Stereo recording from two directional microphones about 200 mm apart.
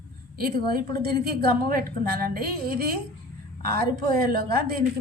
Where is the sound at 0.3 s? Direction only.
45° right (ahead or behind).